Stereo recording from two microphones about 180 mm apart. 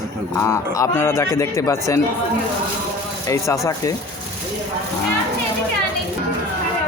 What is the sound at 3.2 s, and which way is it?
Speech, 20° left (ahead or behind).